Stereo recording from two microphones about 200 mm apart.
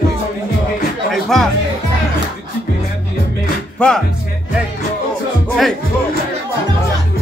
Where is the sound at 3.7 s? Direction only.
5° left (ahead or behind).